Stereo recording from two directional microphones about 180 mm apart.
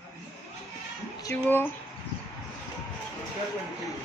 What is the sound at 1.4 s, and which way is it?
Speech, 10° left (ahead or behind).